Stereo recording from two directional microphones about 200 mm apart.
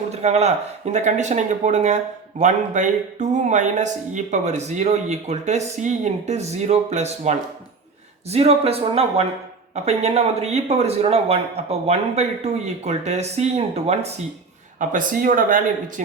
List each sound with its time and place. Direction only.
0.1 s speech: 35° right (ahead or behind)
14.8 s speech: 45° right (ahead or behind)